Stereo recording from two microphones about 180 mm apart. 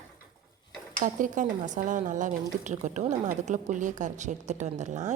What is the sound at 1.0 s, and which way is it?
Speech, 45° right (ahead or behind).